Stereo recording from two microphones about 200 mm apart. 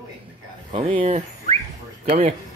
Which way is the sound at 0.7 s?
30° right (ahead or behind).